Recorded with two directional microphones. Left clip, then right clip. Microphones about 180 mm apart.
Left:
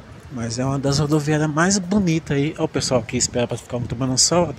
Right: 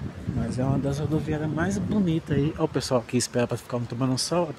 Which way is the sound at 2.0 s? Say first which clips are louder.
Left 5 dB; 15° left (ahead or behind).